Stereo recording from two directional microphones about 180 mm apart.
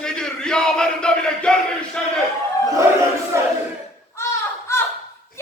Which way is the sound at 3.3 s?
15° right (ahead or behind).